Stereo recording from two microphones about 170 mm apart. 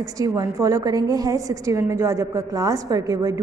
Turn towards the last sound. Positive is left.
turn(degrees=-20)  # may be behind; listen again after turning